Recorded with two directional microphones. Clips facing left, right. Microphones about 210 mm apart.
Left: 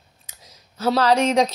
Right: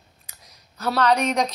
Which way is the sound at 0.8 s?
30° left (ahead or behind).